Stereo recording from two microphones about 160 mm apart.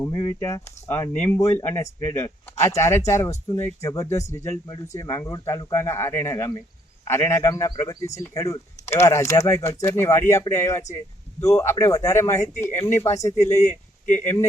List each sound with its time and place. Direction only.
0.0 s speech: 25° left (ahead or behind)